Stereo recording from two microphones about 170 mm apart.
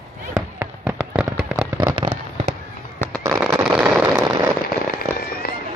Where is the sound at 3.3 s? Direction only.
5° right (ahead or behind).